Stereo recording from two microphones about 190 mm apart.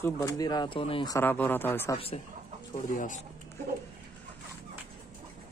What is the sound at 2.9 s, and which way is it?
Speech, 45° left (ahead or behind).